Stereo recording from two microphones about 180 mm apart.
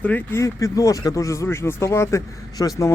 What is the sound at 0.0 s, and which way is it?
Speech, 10° left (ahead or behind).